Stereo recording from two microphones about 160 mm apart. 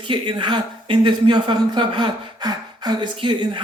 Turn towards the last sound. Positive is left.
turn(degrees=-30)  # may be behind; listen again after turning